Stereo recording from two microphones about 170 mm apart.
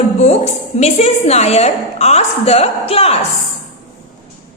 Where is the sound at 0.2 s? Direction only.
40° left (ahead or behind).